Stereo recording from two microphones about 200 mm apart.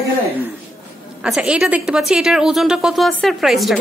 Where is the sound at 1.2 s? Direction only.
5° right (ahead or behind).